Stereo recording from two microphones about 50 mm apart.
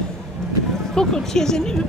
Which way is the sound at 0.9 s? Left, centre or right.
Centre.